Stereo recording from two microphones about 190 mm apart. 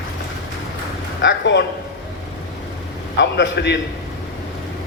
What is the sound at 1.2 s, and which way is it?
Speech, 70° left (ahead or behind).